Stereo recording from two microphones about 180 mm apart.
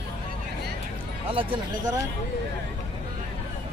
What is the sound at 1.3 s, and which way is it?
Speech, 30° right (ahead or behind).